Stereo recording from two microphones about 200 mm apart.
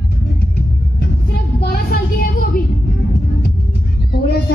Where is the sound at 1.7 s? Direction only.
50° left (ahead or behind).